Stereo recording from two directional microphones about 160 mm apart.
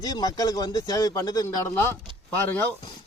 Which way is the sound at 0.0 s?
25° left (ahead or behind).